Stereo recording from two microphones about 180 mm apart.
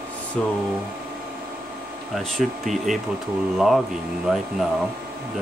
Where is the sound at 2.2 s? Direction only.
Centre (ahead or behind).